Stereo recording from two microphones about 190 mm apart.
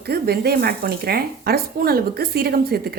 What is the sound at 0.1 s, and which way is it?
Stir, 55° right (ahead or behind).